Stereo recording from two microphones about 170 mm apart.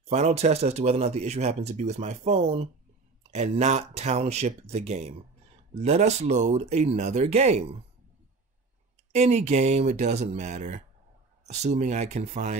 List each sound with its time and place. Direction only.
0.1 s speech: 40° right (ahead or behind)
9.1 s speech: 40° right (ahead or behind)